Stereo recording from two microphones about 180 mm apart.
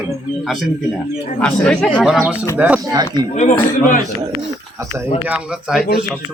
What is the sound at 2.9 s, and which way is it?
Speech, 20° right (ahead or behind).